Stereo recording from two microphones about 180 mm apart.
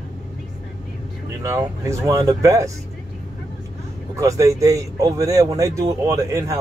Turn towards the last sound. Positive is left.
turn(degrees=-15)  # may be behind; listen again after turning